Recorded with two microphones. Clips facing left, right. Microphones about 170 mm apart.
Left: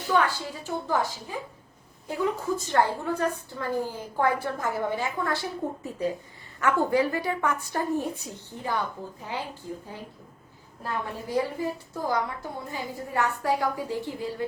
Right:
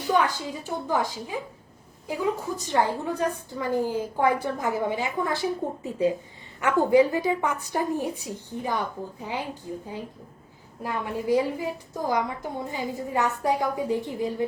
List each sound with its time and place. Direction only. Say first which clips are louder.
0.1 s a woman's voice: right 1 dB; 15° right (ahead or behind)
10.8 s a woman's voice: right 6 dB; 15° right (ahead or behind)